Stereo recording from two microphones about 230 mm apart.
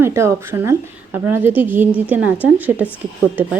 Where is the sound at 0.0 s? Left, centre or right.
Centre.